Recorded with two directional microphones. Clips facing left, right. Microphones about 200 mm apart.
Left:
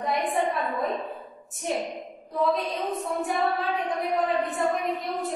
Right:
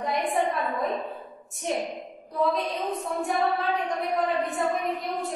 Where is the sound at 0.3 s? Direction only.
Centre (ahead or behind).